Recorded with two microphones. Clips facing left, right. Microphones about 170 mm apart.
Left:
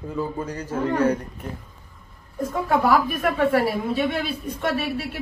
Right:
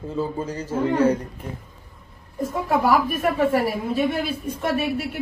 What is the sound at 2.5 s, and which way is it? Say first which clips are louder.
Speech: even; centre (ahead or behind).